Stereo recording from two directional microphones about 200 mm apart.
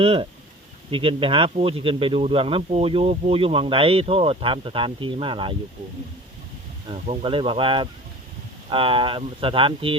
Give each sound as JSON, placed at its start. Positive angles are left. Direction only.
{"t": 0.0, "sound": "speech", "side_deg": -30}
{"t": 6.8, "sound": "speech", "side_deg": -25}